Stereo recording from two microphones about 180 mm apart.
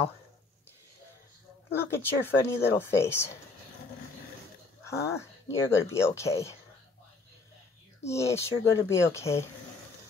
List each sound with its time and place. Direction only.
1.7 s speech: 15° left (ahead or behind)
4.8 s speech: 15° left (ahead or behind)
8.0 s speech: 15° left (ahead or behind)